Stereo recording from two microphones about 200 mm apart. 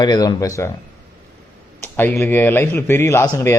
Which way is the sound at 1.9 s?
10° left (ahead or behind).